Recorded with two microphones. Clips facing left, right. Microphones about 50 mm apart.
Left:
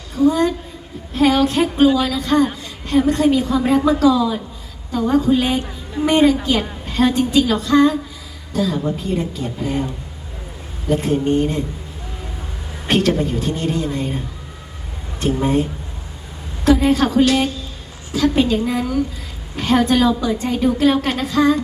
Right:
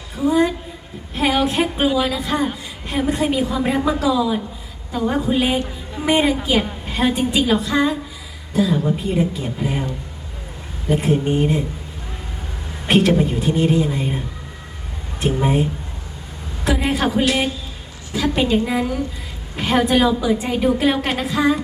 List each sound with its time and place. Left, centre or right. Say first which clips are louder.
0.2 s a woman's voice: left 2 dB; centre
10.8 s a woman's voice: left 1 dB; centre
12.9 s a woman's voice: right 1 dB; centre
15.2 s a woman's voice: left 1 dB; centre
16.6 s a woman's voice: left 5 dB; centre